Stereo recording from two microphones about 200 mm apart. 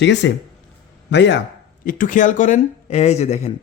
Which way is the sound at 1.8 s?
40° left (ahead or behind).